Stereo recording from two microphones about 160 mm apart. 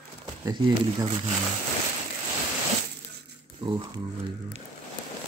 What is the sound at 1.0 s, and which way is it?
Speech, 40° right (ahead or behind).